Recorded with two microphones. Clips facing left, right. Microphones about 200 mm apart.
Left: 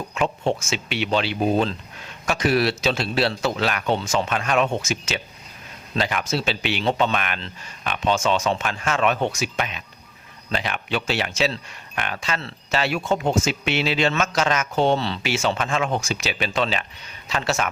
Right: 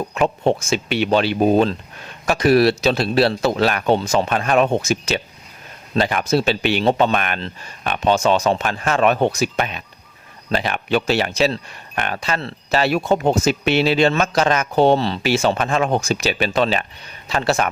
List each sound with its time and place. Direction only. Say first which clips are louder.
0.0 s speech: right 5 dB; 40° right (ahead or behind)
0.4 s speech: right 6 dB; 55° right (ahead or behind); by 17.7 s 35° right (ahead or behind)